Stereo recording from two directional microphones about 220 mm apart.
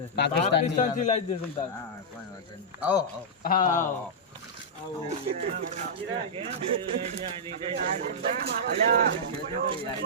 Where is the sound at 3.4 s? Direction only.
40° left (ahead or behind).